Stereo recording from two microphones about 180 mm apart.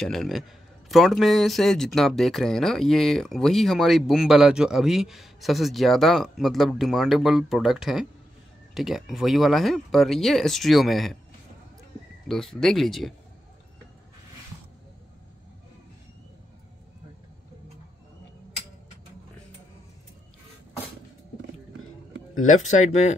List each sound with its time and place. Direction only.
0.0 s speech: centre (ahead or behind)
12.3 s speech: centre (ahead or behind)
22.3 s speech: 45° left (ahead or behind)